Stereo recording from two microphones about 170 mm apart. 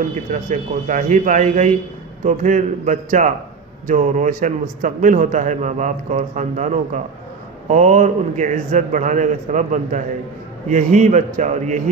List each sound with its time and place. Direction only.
0.3 s a man's voice: 45° right (ahead or behind)